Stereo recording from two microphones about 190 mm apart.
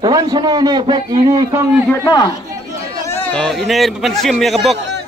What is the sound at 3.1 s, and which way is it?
A man's voice, 10° left (ahead or behind).